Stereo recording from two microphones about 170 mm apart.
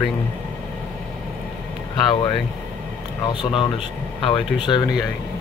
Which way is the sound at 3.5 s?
30° left (ahead or behind).